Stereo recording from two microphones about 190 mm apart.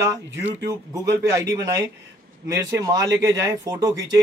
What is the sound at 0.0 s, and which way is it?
Speech, 15° right (ahead or behind).